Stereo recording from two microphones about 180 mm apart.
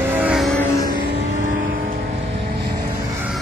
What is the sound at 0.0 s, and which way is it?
Vehicle, 10° right (ahead or behind).